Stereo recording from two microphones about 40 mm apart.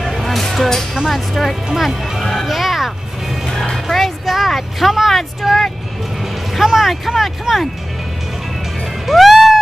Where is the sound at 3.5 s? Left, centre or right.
Centre.